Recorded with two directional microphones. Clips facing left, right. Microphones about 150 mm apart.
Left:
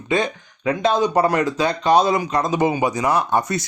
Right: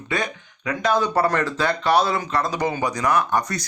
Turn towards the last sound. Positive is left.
turn(degrees=25)  # may be behind; listen again after turning